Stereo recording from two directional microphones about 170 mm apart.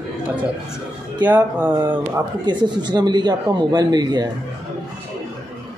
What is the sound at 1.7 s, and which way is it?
Speech, 25° right (ahead or behind).